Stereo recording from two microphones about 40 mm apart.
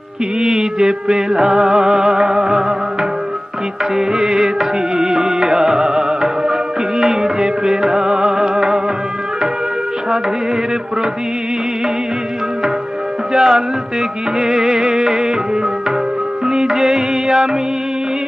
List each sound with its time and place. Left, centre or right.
0.4 s music: centre
3.9 s music: centre
13.3 s music: centre
16.4 s music: centre